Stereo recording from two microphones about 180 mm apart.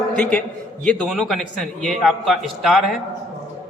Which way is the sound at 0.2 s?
5° left (ahead or behind).